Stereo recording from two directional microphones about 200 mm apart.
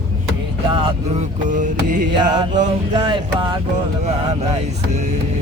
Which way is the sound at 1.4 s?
40° right (ahead or behind).